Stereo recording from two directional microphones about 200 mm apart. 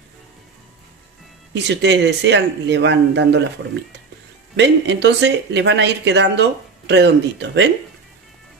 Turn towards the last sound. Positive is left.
turn(degrees=-60)  # may be behind; listen again after turning